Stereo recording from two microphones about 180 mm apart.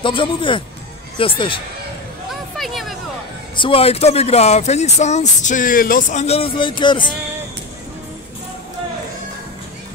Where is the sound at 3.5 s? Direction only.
30° left (ahead or behind).